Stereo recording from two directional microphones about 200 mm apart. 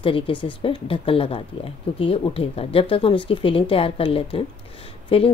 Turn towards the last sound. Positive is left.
turn(degrees=30)  # may be behind; listen again after turning